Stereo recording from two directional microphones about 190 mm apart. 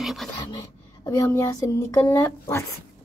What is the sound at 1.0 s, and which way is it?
Speech, 20° left (ahead or behind).